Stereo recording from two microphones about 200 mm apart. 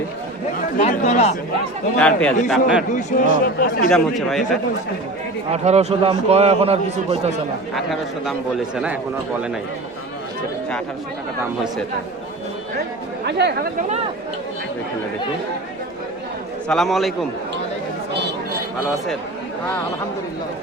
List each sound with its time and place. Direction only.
0.8 s speech: 35° left (ahead or behind)
2.0 s a man's voice: 5° left (ahead or behind)
2.9 s speech: 40° left (ahead or behind)
3.8 s a man's voice: centre (ahead or behind)
5.5 s a man's voice: 35° right (ahead or behind)
7.8 s a man's voice: centre (ahead or behind)
13.2 s speech: 55° right (ahead or behind)
16.6 s a man's voice: centre (ahead or behind)